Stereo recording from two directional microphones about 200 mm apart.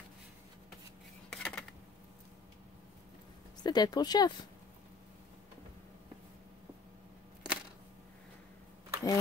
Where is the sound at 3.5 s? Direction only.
20° left (ahead or behind).